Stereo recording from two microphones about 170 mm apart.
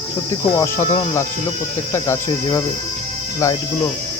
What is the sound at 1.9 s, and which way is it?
Cricket, 20° left (ahead or behind).